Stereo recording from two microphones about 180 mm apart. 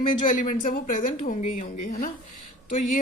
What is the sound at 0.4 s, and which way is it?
A woman's voice, 50° left (ahead or behind).